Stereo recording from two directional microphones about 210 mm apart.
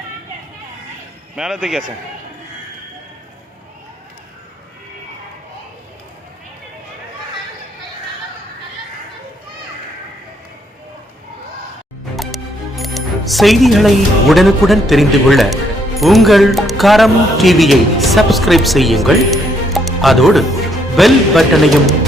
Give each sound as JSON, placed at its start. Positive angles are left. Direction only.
{"t": 1.4, "sound": "a man's voice", "side_deg": 0}
{"t": 12.1, "sound": "speech", "side_deg": 0}